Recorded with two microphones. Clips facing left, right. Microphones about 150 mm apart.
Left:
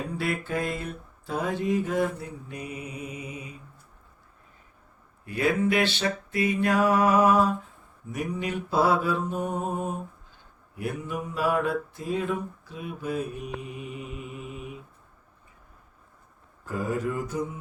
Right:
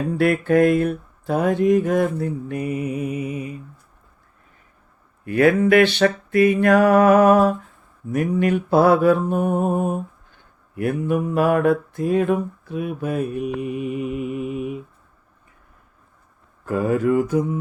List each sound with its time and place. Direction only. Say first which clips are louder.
0.2 s mantra: right 14 dB; 60° right (ahead or behind)
5.2 s mantra: right 8 dB; 65° right (ahead or behind)
16.6 s mantra: right 10 dB; 65° right (ahead or behind)